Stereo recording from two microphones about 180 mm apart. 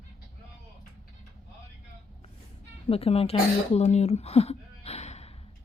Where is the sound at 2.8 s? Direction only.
35° left (ahead or behind).